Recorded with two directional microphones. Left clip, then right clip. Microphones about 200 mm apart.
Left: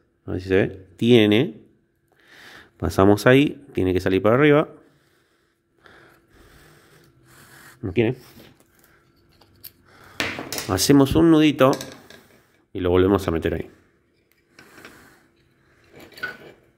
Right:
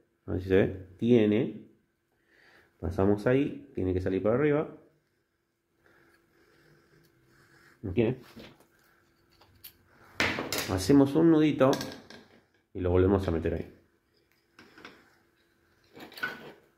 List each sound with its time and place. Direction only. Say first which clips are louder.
0.2 s speech: left 5 dB; 25° left (ahead or behind)
0.9 s speech: left 9 dB; 50° left (ahead or behind)
7.8 s speech: left 7 dB; 60° left (ahead or behind)
10.7 s speech: left 7 dB; 50° left (ahead or behind)
12.7 s speech: left 7 dB; 50° left (ahead or behind)